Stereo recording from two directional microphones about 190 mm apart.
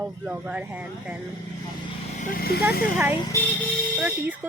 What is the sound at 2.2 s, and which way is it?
Speech, 50° left (ahead or behind).